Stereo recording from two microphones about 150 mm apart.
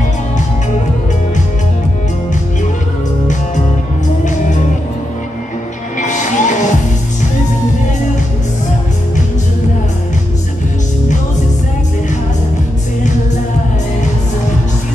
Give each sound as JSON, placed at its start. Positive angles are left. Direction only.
{"t": 4.2, "sound": "music", "side_deg": 55}
{"t": 5.9, "sound": "music", "side_deg": 55}